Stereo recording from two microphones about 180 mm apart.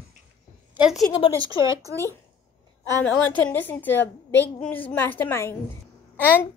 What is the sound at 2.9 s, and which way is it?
A child's voice, 10° left (ahead or behind).